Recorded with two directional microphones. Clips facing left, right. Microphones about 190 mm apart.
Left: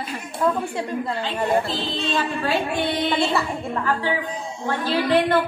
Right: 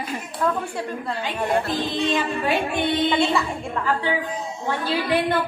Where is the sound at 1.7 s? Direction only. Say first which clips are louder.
Right 3 dB; 15° right (ahead or behind).